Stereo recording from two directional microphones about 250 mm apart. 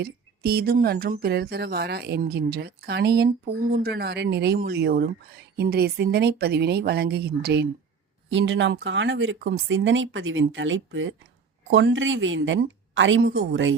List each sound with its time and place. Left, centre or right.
0.0 s speech: right